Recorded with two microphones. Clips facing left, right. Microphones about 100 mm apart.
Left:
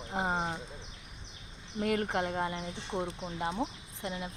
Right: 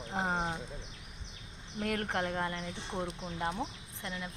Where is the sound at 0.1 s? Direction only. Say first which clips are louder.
Left 1 dB; 5° left (ahead or behind).